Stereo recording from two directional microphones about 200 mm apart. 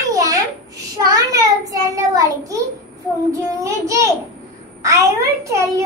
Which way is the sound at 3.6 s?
15° right (ahead or behind).